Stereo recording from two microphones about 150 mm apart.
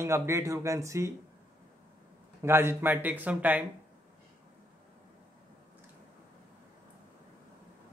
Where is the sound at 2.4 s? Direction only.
15° right (ahead or behind).